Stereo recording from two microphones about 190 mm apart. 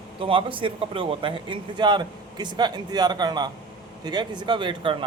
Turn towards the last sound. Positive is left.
turn(degrees=-25)  # may be behind; listen again after turning